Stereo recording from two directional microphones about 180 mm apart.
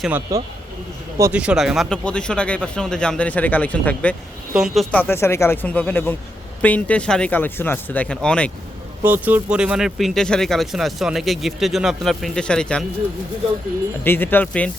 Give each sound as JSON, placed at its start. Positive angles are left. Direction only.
{"t": 0.3, "sound": "speech", "side_deg": -20}
{"t": 1.2, "sound": "speech", "side_deg": -5}
{"t": 9.0, "sound": "speech", "side_deg": -10}
{"t": 14.0, "sound": "speech", "side_deg": 10}